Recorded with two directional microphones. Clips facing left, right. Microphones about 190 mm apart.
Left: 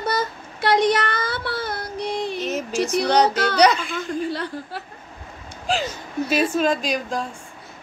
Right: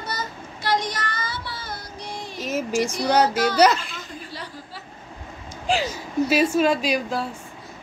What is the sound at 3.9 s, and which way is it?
Chuckle, 60° left (ahead or behind).